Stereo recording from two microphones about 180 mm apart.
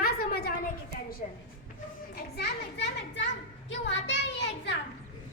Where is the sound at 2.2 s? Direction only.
65° left (ahead or behind).